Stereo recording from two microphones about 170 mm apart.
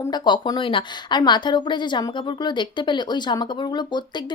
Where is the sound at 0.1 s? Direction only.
25° left (ahead or behind).